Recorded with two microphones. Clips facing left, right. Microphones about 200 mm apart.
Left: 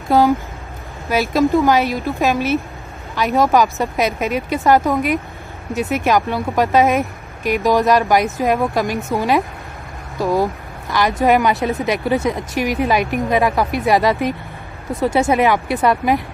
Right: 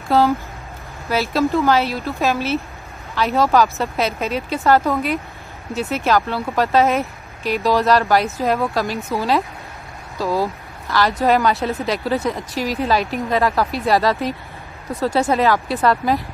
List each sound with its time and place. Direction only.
0.1 s speech: 15° left (ahead or behind)